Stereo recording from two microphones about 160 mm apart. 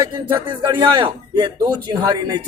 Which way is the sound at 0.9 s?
30° right (ahead or behind).